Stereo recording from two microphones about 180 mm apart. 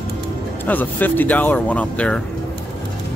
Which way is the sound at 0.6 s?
10° left (ahead or behind).